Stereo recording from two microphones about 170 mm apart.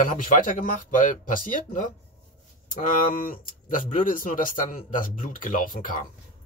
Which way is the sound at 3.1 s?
55° left (ahead or behind).